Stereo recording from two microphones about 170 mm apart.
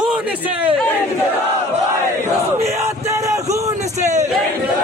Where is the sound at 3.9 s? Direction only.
45° right (ahead or behind).